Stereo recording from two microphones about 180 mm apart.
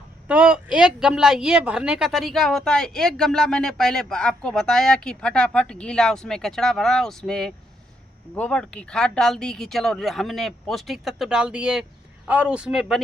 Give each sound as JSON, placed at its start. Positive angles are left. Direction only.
{"t": 0.3, "sound": "speech", "side_deg": -5}